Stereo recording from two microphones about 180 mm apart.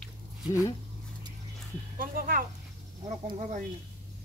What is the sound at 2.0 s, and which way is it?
Speech, 50° right (ahead or behind).